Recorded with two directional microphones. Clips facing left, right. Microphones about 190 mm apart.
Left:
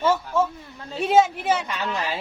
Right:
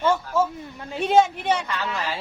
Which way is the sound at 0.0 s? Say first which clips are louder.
Even; 5° left (ahead or behind).